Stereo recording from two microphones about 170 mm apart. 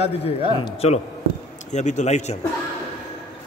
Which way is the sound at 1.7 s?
45° left (ahead or behind).